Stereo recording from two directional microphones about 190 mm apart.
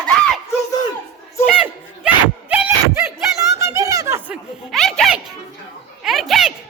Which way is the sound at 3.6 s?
15° right (ahead or behind).